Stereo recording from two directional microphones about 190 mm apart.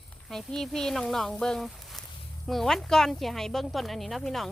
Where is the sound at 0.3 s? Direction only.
Centre (ahead or behind).